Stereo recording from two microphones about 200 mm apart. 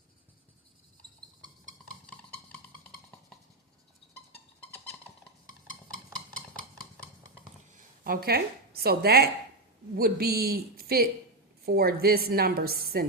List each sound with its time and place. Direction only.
1.4 s music: 75° left (ahead or behind)
2.0 s drum: 5° left (ahead or behind)
8.0 s a woman's voice: 50° right (ahead or behind)